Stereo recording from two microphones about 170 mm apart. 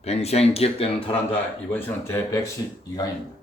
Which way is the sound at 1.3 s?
10° left (ahead or behind).